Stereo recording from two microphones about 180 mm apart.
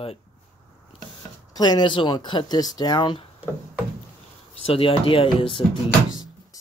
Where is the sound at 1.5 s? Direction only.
20° left (ahead or behind).